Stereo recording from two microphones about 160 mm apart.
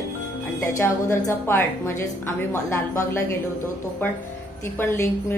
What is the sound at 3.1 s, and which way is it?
Speech, 20° left (ahead or behind).